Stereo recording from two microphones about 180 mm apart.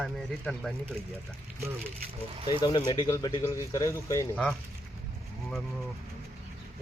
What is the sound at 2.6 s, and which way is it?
Speech, 20° left (ahead or behind).